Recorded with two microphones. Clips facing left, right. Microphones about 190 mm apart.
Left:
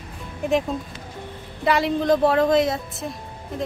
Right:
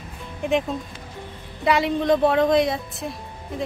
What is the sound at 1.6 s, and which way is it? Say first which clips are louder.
A woman's voice: even; centre (ahead or behind).